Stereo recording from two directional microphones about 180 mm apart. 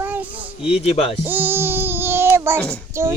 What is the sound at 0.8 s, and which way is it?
Speech, 35° left (ahead or behind).